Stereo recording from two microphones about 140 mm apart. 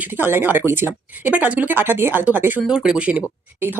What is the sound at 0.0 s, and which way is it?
Speech, 15° right (ahead or behind).